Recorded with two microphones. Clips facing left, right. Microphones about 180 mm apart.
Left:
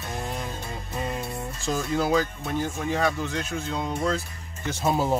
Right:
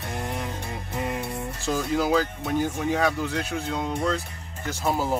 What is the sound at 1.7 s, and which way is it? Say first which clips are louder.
Speech: right 1 dB; centre (ahead or behind).